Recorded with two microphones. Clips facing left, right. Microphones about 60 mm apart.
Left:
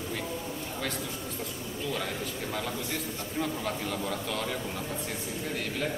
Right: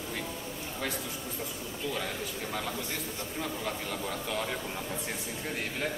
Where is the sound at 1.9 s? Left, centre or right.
Centre.